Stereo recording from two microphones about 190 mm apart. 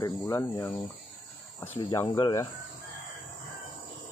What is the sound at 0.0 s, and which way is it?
Speech, 15° left (ahead or behind).